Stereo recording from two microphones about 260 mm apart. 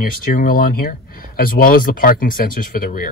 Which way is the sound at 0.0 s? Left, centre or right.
Left.